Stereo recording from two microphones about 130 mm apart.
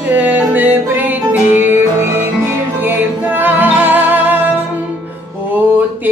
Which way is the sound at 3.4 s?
15° right (ahead or behind).